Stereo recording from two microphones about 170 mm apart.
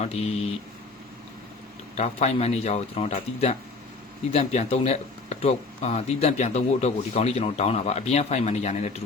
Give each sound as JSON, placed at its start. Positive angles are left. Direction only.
{"t": 0.0, "sound": "speech", "side_deg": 40}
{"t": 2.0, "sound": "speech", "side_deg": 40}